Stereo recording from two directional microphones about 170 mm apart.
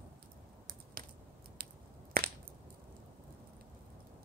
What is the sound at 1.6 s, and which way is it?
Finger snapping, 60° right (ahead or behind).